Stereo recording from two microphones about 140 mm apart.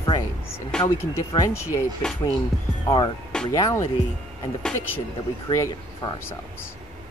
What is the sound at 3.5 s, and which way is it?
Speech, 25° left (ahead or behind).